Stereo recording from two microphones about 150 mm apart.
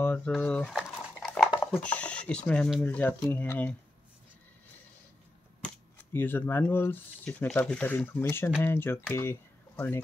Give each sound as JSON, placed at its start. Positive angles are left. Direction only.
{"t": 0.0, "sound": "a sound", "side_deg": 10}
{"t": 1.6, "sound": "speech", "side_deg": 10}
{"t": 6.1, "sound": "speech", "side_deg": 15}